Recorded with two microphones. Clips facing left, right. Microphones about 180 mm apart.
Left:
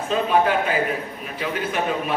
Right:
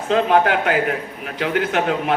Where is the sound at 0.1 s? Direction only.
80° right.